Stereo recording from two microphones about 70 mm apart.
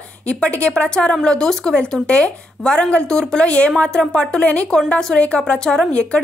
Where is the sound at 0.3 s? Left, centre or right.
Centre.